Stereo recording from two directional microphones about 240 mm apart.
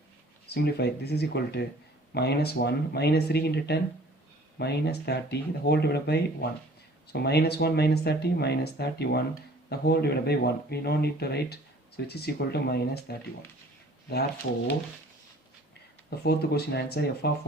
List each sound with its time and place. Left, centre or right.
0.4 s speech: left
16.0 s speech: left